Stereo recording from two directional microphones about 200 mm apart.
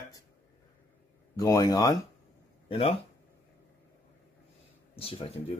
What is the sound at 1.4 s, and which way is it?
Speech, 20° left (ahead or behind).